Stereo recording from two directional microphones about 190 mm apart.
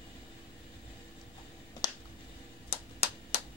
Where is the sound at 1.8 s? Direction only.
20° left (ahead or behind).